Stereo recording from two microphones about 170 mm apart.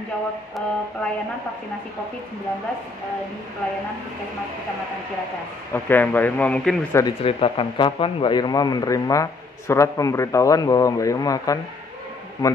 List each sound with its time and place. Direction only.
5.7 s a man's voice: 10° left (ahead or behind)
6.9 s a man's voice: 15° left (ahead or behind)
7.2 s a man's voice: 35° left (ahead or behind)